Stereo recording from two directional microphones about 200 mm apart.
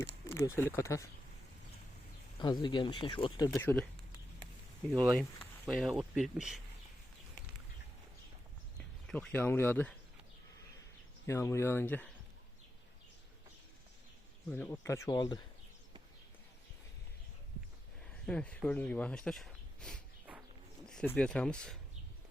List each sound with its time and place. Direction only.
0.3 s speech: 15° left (ahead or behind)
2.4 s speech: 25° left (ahead or behind)
3.5 s speech: 10° left (ahead or behind)
5.6 s speech: centre (ahead or behind)
8.8 s speech: 5° left (ahead or behind)
11.3 s speech: 15° left (ahead or behind)
14.5 s speech: 10° left (ahead or behind)
18.3 s speech: 5° left (ahead or behind)